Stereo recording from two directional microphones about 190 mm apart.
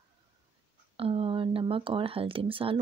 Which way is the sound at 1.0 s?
30° right (ahead or behind).